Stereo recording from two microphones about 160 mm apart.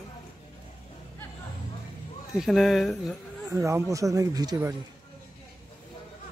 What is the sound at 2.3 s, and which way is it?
Speech, centre (ahead or behind).